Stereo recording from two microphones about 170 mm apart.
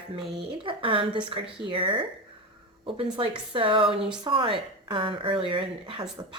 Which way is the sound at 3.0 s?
30° right (ahead or behind).